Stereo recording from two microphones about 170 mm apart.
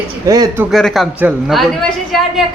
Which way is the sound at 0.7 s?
Centre (ahead or behind).